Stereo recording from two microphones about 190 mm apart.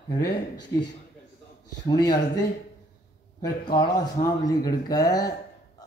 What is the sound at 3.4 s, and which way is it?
Speech, 20° left (ahead or behind).